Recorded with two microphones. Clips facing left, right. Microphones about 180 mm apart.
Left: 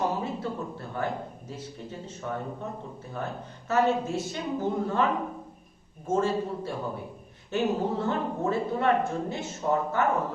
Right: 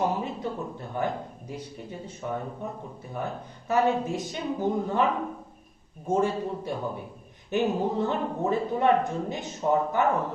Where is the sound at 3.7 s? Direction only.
15° right (ahead or behind).